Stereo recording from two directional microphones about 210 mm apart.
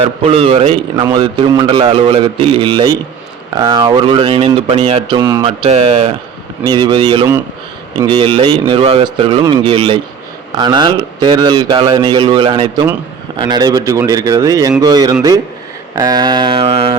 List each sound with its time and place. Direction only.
0.2 s speech: 30° right (ahead or behind)